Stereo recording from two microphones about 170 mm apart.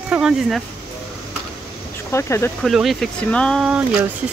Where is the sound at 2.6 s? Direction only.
Centre (ahead or behind).